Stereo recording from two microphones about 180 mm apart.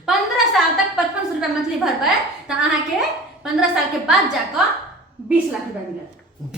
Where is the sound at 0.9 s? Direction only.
5° right (ahead or behind).